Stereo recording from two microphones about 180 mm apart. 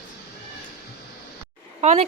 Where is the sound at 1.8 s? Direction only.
40° right (ahead or behind).